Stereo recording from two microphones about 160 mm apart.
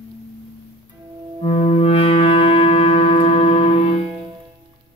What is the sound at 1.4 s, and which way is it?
Music, 40° left (ahead or behind).